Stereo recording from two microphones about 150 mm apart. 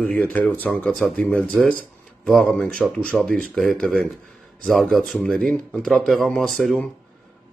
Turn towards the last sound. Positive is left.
turn(degrees=5)  # may be behind; listen again after turning